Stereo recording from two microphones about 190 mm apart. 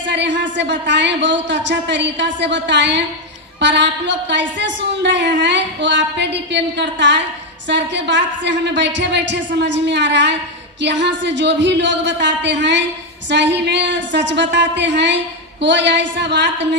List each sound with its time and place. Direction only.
0.1 s a woman's voice: 70° right (ahead or behind)